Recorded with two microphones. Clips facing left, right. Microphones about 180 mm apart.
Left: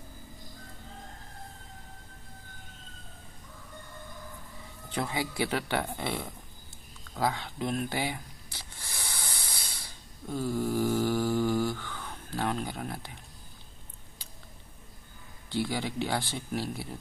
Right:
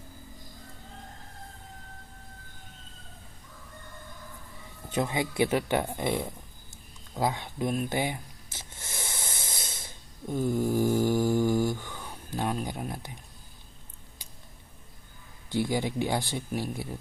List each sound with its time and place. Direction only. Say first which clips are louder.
4.9 s speech: right 4 dB; 20° right (ahead or behind)
7.2 s a sound: right 1 dB; 20° right (ahead or behind)
10.8 s speech: right 2 dB; 15° right (ahead or behind)
15.5 s speech: right 3 dB; 15° right (ahead or behind)